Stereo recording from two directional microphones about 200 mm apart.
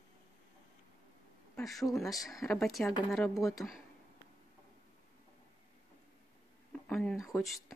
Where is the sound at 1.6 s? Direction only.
Centre (ahead or behind).